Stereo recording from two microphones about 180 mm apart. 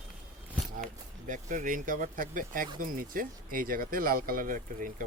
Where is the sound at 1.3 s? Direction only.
45° right (ahead or behind).